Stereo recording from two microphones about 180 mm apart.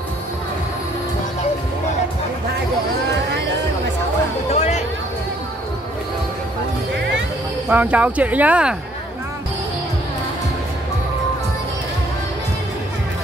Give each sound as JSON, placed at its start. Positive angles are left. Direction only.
{"t": 4.6, "sound": "music", "side_deg": 40}
{"t": 7.7, "sound": "speech", "side_deg": -10}